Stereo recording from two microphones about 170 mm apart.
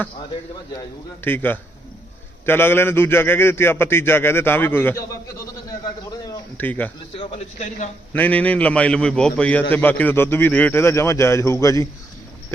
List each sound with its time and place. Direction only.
1.2 s a man's voice: 10° left (ahead or behind)
5.8 s a sound: 20° left (ahead or behind)
6.6 s a man's voice: 10° left (ahead or behind)
7.2 s a man's voice: 35° left (ahead or behind)
8.1 s a man's voice: 10° left (ahead or behind)